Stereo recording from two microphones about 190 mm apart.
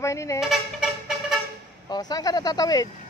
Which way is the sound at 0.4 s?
Centre (ahead or behind).